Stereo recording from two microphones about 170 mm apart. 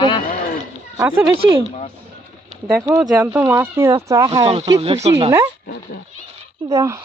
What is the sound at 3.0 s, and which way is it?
Speech, 5° right (ahead or behind).